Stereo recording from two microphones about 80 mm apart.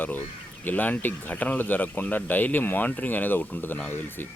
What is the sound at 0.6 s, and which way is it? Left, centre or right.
Speech, left.